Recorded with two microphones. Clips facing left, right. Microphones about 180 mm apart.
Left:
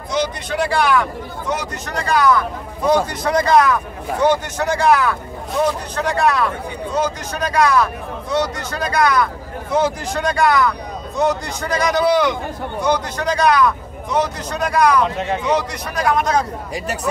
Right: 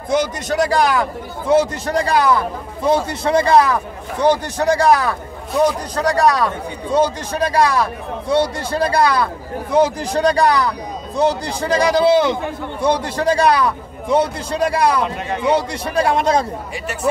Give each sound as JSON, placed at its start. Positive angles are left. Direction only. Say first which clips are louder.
{"t": 0.1, "sound": "a man's voice", "louder": "right 3 dB", "side_deg": -45}